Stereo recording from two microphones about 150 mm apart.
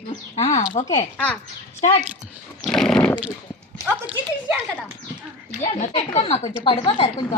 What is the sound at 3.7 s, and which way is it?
Clip-clop, 15° right (ahead or behind).